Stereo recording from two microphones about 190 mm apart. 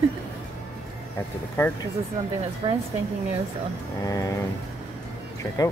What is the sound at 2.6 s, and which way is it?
Speech, 25° right (ahead or behind).